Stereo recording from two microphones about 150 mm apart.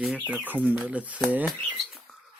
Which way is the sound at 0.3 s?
10° right (ahead or behind).